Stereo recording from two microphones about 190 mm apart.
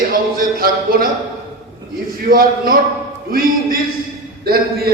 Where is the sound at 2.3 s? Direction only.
50° right (ahead or behind).